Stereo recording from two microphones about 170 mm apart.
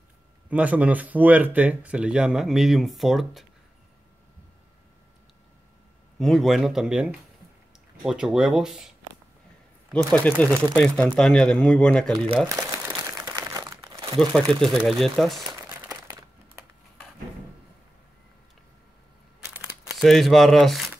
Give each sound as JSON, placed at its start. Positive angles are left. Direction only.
{"t": 0.5, "sound": "speech", "side_deg": -10}
{"t": 6.1, "sound": "speech", "side_deg": 0}
{"t": 10.1, "sound": "speech", "side_deg": 10}
{"t": 12.4, "sound": "crumpling", "side_deg": -15}
{"t": 14.5, "sound": "speech", "side_deg": 0}
{"t": 19.5, "sound": "crumpling", "side_deg": -5}